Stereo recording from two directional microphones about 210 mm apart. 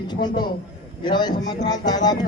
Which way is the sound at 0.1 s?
20° left (ahead or behind).